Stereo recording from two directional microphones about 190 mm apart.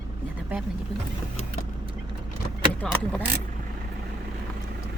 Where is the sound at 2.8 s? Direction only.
10° left (ahead or behind).